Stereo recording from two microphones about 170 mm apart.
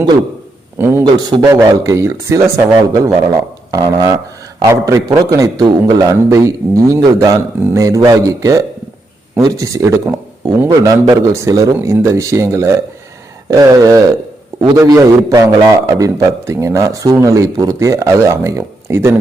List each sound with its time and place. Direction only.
0.8 s a man's voice: 15° right (ahead or behind)
1.0 s a man's voice: 25° right (ahead or behind)